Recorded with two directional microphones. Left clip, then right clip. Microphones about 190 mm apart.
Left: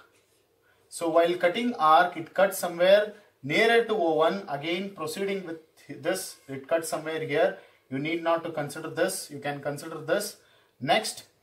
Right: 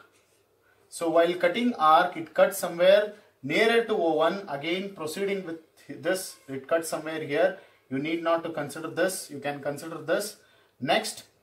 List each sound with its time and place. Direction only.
1.0 s speech: 15° right (ahead or behind)